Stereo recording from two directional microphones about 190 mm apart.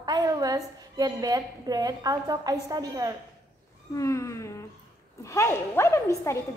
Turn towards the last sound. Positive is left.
turn(degrees=15)  # may be behind; listen again after turning